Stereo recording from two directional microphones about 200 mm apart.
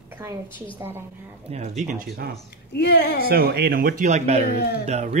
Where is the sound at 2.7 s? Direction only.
55° left (ahead or behind).